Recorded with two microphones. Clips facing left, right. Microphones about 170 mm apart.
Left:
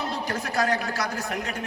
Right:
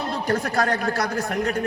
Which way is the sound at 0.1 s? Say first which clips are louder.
Right 6 dB; 55° right (ahead or behind).